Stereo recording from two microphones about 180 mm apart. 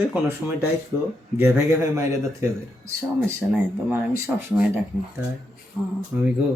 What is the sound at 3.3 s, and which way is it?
Speech, 10° right (ahead or behind).